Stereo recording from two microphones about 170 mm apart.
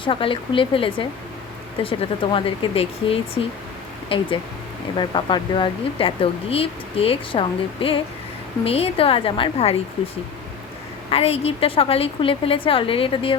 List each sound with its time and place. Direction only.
0.0 s speech: 30° left (ahead or behind)
11.1 s speech: 35° left (ahead or behind)